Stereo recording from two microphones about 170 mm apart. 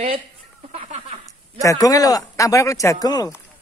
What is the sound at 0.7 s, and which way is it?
Speech, 35° right (ahead or behind).